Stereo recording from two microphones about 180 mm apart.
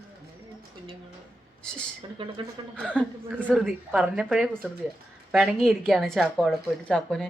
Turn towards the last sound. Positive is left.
turn(degrees=5)  # may be behind; listen again after turning